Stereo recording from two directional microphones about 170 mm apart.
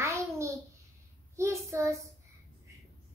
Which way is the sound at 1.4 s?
15° right (ahead or behind).